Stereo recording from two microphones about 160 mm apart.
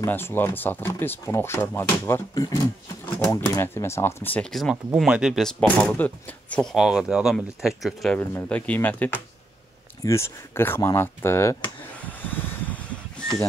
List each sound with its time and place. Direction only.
0.0 s speech: 15° left (ahead or behind)
8.2 s speech: 10° left (ahead or behind)
12.0 s vehicle: 10° left (ahead or behind)